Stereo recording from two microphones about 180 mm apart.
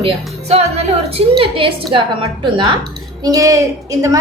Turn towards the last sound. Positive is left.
turn(degrees=-15)  # may be behind; listen again after turning